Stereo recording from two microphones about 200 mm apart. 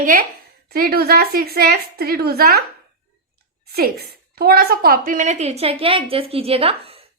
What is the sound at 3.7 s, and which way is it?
A woman's voice, 50° right (ahead or behind).